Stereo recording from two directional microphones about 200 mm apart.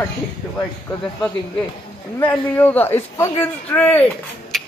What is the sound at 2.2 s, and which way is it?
A man's voice, 10° left (ahead or behind).